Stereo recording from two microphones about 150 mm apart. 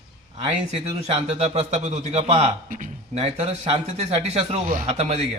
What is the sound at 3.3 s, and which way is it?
A man's voice, 40° right (ahead or behind).